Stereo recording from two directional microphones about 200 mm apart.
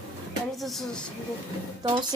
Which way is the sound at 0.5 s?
Centre (ahead or behind).